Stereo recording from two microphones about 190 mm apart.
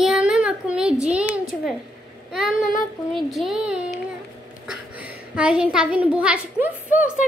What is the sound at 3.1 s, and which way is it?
Speech, centre (ahead or behind).